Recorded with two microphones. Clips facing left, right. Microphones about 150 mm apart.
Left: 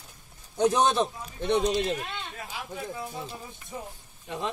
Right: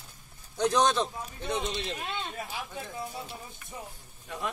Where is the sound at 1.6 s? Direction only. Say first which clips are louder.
Left 9 dB; 45° left (ahead or behind).